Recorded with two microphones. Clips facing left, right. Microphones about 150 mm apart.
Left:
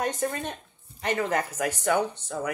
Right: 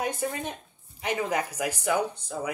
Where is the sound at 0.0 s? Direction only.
10° right (ahead or behind).